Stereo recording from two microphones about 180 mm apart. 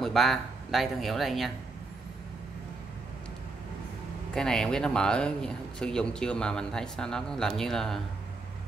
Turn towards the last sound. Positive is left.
turn(degrees=0)  # may be behind; listen again after turning